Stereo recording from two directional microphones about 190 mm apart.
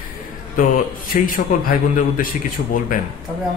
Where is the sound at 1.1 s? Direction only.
45° left (ahead or behind).